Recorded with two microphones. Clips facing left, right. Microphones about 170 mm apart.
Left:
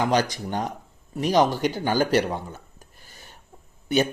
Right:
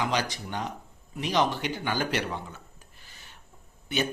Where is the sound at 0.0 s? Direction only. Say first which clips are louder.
Left 6 dB; 45° left (ahead or behind).